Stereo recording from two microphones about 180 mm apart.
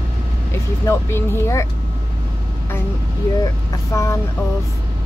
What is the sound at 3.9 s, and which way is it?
Speech, 15° left (ahead or behind).